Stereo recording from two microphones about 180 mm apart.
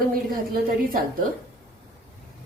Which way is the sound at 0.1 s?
55° right (ahead or behind).